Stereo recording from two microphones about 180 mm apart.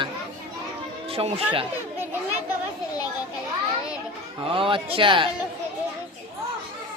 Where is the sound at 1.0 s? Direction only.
30° right (ahead or behind).